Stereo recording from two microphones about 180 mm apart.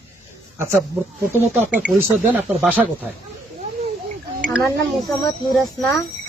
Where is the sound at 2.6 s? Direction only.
10° right (ahead or behind).